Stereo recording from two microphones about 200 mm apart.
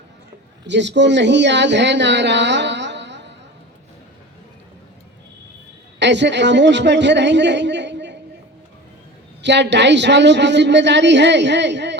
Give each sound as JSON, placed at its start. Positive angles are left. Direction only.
{"t": 0.7, "sound": "speech", "side_deg": -60}
{"t": 6.0, "sound": "a man's voice", "side_deg": -60}
{"t": 9.4, "sound": "a woman's voice", "side_deg": -60}